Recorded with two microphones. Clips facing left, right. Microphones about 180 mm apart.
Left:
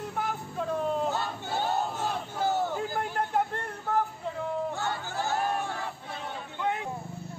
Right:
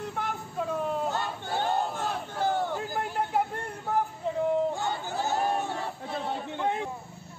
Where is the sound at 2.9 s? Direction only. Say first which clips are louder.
Even; 10° right (ahead or behind).